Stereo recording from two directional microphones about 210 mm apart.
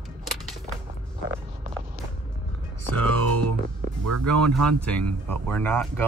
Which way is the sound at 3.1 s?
90° right.